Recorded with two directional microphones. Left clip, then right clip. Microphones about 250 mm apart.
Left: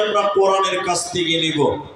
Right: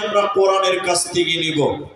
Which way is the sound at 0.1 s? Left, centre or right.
Right.